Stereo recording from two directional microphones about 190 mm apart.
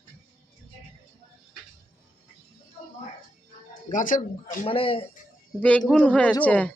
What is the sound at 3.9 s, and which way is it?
Speech, 45° left (ahead or behind).